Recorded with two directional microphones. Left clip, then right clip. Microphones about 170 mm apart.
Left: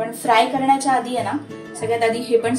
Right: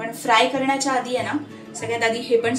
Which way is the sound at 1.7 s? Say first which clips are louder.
Left 3 dB; 65° left (ahead or behind).